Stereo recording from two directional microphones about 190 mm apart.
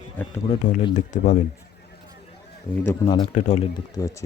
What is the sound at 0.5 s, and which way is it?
Speech, 40° left (ahead or behind).